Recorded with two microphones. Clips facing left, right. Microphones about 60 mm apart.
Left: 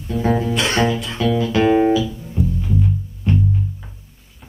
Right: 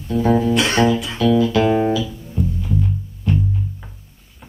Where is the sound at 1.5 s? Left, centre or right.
Centre.